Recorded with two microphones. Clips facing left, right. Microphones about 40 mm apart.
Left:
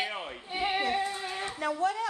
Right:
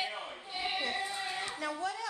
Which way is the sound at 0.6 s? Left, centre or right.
Left.